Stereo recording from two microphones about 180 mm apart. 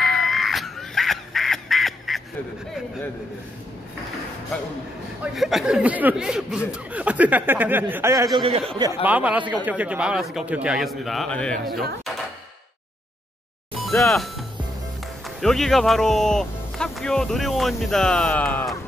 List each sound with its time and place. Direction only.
0.0 s crow: centre (ahead or behind)
5.2 s speech: centre (ahead or behind)
8.4 s speech: 35° right (ahead or behind)
9.0 s speech: 10° right (ahead or behind)
13.8 s speech: centre (ahead or behind)